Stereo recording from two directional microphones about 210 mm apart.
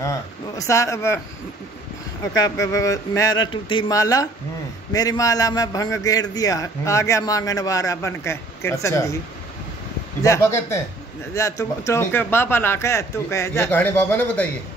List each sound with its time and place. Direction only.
0.0 s a man's voice: 15° left (ahead or behind)
2.3 s a man's voice: 15° left (ahead or behind)
10.2 s a man's voice: 15° left (ahead or behind)